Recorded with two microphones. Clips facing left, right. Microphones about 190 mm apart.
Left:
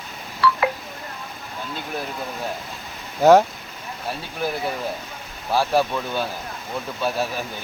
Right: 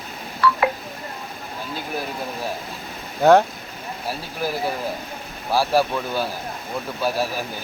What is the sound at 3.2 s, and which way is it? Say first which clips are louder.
Speech: left 1 dB; 5° left (ahead or behind).